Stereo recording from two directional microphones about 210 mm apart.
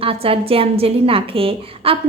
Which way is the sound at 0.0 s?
25° right (ahead or behind).